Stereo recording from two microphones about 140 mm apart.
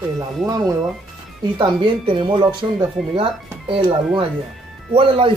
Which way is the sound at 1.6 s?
35° right (ahead or behind).